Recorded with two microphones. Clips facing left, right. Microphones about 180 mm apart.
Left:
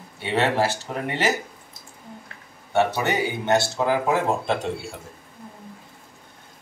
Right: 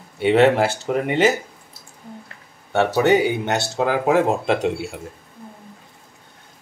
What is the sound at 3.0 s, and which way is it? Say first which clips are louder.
Speech: right 8 dB; 70° right (ahead or behind).